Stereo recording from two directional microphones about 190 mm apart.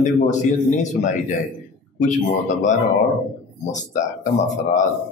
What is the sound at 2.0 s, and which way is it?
Speech, 40° left (ahead or behind).